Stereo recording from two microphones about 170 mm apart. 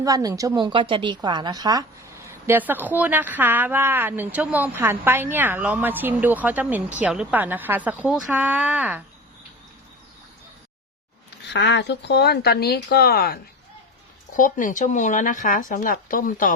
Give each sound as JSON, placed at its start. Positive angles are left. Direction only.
{"t": 0.0, "sound": "a woman's voice", "side_deg": -20}
{"t": 11.4, "sound": "speech", "side_deg": 90}
{"t": 14.3, "sound": "speech", "side_deg": 50}